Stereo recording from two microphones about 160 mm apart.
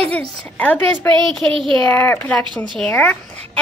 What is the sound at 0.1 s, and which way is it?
A woman's voice, 10° left (ahead or behind).